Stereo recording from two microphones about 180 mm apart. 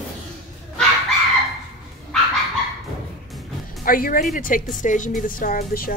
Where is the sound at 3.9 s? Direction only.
50° left (ahead or behind).